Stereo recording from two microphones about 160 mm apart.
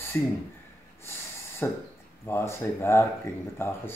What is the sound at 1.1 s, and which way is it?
Snort, 15° left (ahead or behind).